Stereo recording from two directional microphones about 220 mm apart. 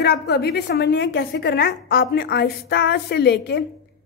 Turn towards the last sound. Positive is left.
turn(degrees=50)  # may be behind; listen again after turning